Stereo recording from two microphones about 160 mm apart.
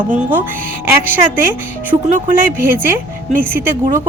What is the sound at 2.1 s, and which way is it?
Speech, 55° right (ahead or behind).